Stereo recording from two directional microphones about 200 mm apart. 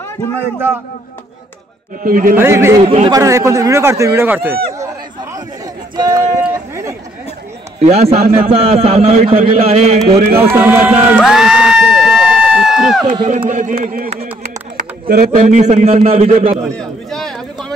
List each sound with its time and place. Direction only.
2.0 s a man's voice: 45° right (ahead or behind)
2.3 s speech: 10° right (ahead or behind)
5.9 s speech: 15° right (ahead or behind)
6.3 s a sound: 15° right (ahead or behind)
7.8 s a man's voice: 30° right (ahead or behind)
10.5 s crowd: 10° right (ahead or behind)
13.0 s speech: 30° right (ahead or behind)
16.6 s a sound: 5° left (ahead or behind)